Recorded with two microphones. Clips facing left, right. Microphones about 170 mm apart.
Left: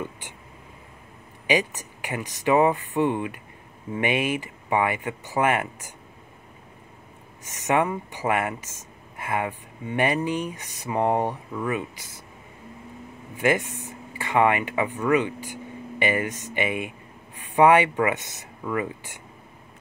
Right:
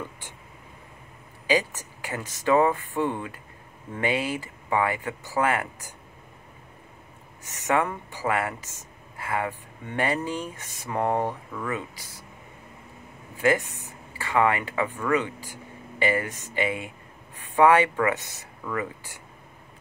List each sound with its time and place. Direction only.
1.5 s speech: 15° left (ahead or behind)
7.4 s speech: 15° left (ahead or behind)
13.4 s speech: 15° left (ahead or behind)